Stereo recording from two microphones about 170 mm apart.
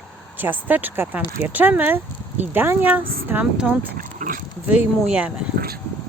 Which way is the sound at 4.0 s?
55° right (ahead or behind).